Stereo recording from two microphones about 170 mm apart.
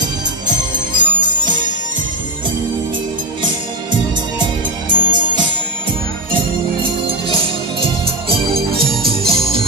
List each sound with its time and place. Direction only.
0.0 s music: 25° right (ahead or behind)
4.4 s music: 25° right (ahead or behind)
8.8 s music: centre (ahead or behind)
9.3 s organ: 60° right (ahead or behind)